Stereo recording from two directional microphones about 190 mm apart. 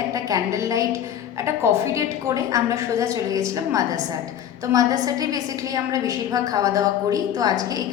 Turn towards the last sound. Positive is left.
turn(degrees=-20)  # may be behind; listen again after turning